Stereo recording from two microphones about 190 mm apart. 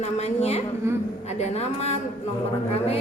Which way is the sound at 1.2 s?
35° left (ahead or behind).